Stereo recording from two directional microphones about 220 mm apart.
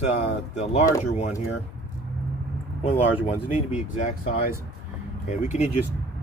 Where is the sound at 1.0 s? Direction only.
30° left (ahead or behind).